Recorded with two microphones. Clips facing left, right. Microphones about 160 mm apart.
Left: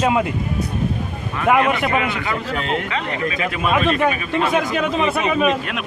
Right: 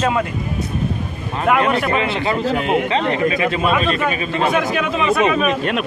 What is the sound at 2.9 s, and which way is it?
Speech, 30° right (ahead or behind).